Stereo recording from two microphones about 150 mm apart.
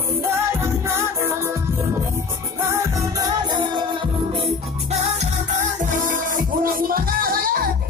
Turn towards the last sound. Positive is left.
turn(degrees=-75)  # may be behind; listen again after turning